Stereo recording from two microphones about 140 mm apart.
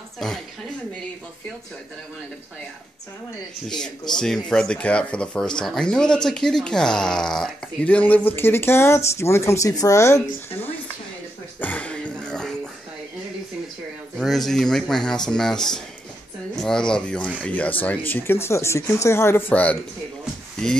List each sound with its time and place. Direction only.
0.2 s speech: centre (ahead or behind)
3.6 s speech: 5° left (ahead or behind); by 10.2 s 20° left (ahead or behind)
11.6 s a sound: 10° left (ahead or behind)
14.1 s speech: centre (ahead or behind)